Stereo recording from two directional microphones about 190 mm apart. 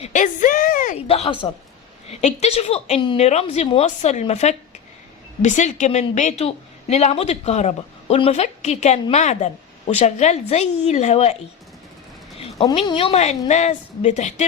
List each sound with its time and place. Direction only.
0.0 s a sound: 40° left (ahead or behind)
1.0 s a woman's voice: 30° left (ahead or behind)
12.7 s a woman's voice: 30° left (ahead or behind)